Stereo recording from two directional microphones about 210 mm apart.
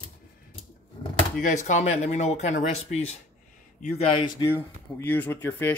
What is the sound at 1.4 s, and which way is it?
Speech, 35° left (ahead or behind).